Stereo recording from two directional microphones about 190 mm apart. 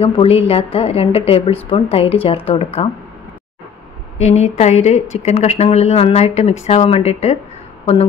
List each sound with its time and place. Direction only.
0.0 s a woman's voice: 35° left (ahead or behind)
4.2 s a woman's voice: 35° left (ahead or behind)